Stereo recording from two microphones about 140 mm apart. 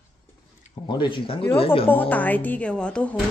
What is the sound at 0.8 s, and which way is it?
Speech, 35° left (ahead or behind).